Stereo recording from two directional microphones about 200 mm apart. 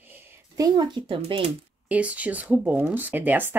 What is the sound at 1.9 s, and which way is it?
Speech, 5° right (ahead or behind).